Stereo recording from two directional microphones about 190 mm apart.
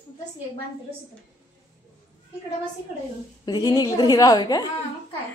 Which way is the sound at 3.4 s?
20° left (ahead or behind).